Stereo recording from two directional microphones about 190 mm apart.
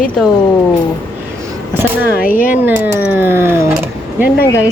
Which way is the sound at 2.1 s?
45° left (ahead or behind).